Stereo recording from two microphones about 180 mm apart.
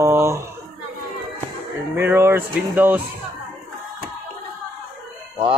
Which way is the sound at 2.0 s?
10° right (ahead or behind).